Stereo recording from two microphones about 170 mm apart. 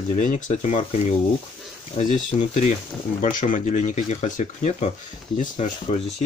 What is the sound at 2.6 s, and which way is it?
Speech, 50° left (ahead or behind).